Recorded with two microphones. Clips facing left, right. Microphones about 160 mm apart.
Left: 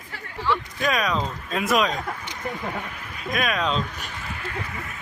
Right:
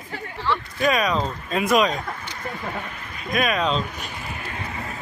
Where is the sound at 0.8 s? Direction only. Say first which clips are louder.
Right 3 dB; centre (ahead or behind).